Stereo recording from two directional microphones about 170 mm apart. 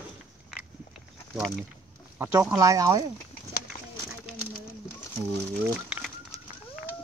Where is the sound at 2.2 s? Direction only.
15° right (ahead or behind).